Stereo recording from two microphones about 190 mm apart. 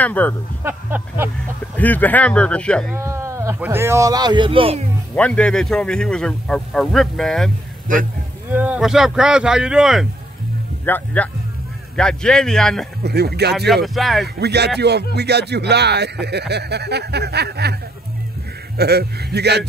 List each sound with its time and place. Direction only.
0.0 s speech: 10° left (ahead or behind)
0.7 s speech: 10° right (ahead or behind)
1.8 s speech: 10° left (ahead or behind)
2.9 s speech: 15° right (ahead or behind); by 4.8 s 30° right (ahead or behind)
5.1 s a man's voice: 5° left (ahead or behind)
8.5 s a man's voice: 10° right (ahead or behind)
10.9 s a man's voice: 10° left (ahead or behind)
13.0 s speech: 60° right (ahead or behind)
13.8 s a man's voice: centre (ahead or behind)
14.4 s speech: 60° right (ahead or behind)
18.8 s speech: 60° right (ahead or behind)